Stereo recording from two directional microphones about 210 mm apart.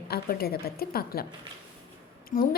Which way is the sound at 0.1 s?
45° left (ahead or behind).